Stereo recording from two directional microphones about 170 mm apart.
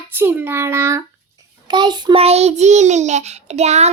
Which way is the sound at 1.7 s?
25° right (ahead or behind).